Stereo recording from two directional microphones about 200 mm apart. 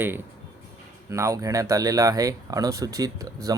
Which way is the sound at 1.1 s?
15° right (ahead or behind).